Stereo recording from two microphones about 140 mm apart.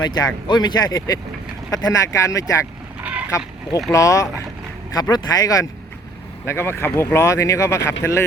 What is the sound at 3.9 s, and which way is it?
Speech, 20° left (ahead or behind).